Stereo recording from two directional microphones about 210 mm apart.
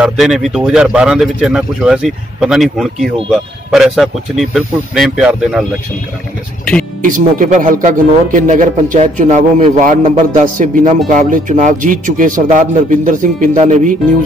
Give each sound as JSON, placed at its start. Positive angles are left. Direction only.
{"t": 0.0, "sound": "a man's voice", "side_deg": 0}
{"t": 7.0, "sound": "speech", "side_deg": -40}